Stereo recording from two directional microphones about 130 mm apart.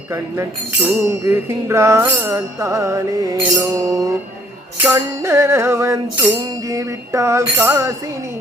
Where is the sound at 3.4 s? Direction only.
15° right (ahead or behind).